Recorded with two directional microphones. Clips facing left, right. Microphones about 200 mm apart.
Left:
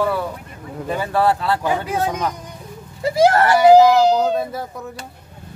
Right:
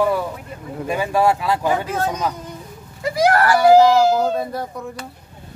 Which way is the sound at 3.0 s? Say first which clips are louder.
Left 2 dB; 25° left (ahead or behind).